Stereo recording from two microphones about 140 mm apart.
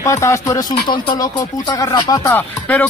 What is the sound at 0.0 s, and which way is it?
Speech, 20° left (ahead or behind).